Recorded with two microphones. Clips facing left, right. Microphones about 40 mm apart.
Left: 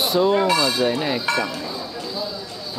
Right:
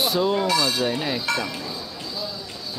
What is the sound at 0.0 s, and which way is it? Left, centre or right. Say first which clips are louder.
Speech: left 4 dB; centre.